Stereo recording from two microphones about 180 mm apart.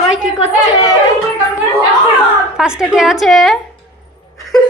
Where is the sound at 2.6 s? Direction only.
5° right (ahead or behind).